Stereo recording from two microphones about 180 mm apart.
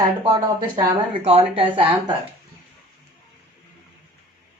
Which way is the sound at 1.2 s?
35° right (ahead or behind).